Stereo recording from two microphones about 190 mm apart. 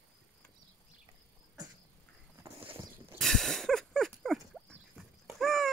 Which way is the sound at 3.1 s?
Centre (ahead or behind).